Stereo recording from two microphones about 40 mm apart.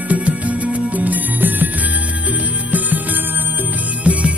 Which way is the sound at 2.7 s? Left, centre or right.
Right.